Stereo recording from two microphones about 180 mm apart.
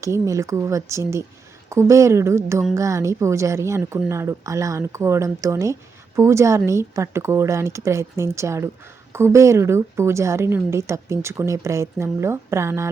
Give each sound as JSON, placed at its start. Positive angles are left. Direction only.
{"t": 0.0, "sound": "a woman's voice", "side_deg": -15}